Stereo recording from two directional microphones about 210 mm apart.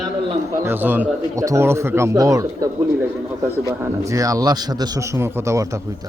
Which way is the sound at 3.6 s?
15° right (ahead or behind).